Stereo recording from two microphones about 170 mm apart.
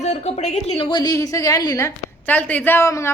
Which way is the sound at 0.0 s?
40° left (ahead or behind).